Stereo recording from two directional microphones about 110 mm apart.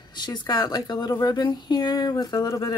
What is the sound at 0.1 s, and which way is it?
Speech, 40° left (ahead or behind).